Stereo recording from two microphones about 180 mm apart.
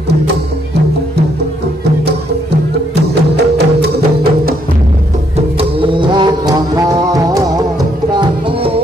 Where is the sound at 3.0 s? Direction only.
65° right (ahead or behind).